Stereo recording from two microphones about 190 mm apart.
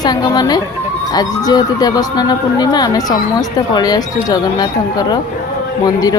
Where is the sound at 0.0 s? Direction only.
20° left (ahead or behind).